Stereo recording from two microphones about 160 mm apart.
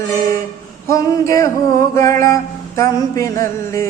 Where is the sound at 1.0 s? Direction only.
20° left (ahead or behind).